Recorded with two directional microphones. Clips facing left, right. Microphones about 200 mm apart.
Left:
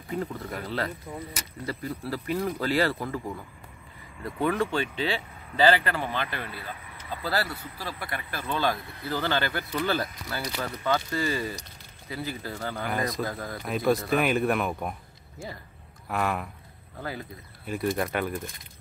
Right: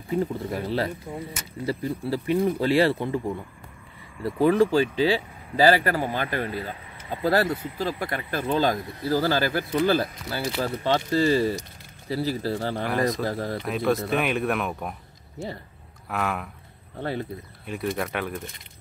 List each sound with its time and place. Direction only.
0.1 s speech: 30° right (ahead or behind); by 6.7 s 45° right (ahead or behind)
6.7 s a sound: 25° right (ahead or behind)
7.3 s speech: 25° right (ahead or behind)
8.0 s speech: 45° right (ahead or behind)
12.8 s speech: centre (ahead or behind)
13.2 s speech: 30° right (ahead or behind)
13.7 s speech: centre (ahead or behind)
16.1 s speech: centre (ahead or behind)
17.0 s speech: 30° right (ahead or behind)
17.6 s speech: centre (ahead or behind)